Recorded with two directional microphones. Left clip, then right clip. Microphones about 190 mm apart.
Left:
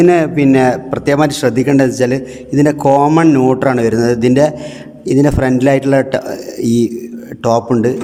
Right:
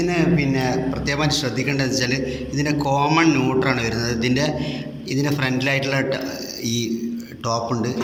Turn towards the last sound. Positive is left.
turn(degrees=65)  # may be behind; listen again after turning